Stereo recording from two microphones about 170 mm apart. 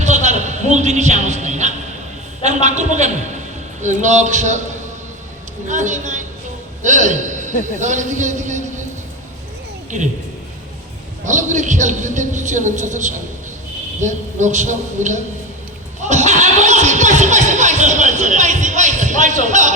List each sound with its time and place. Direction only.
0.0 s music: 45° right (ahead or behind)
2.4 s speech: 45° right (ahead or behind)
5.6 s a man's voice: 45° right (ahead or behind)
9.9 s speech: 45° right (ahead or behind)
11.3 s speech: 45° right (ahead or behind)
16.0 s music: 45° right (ahead or behind)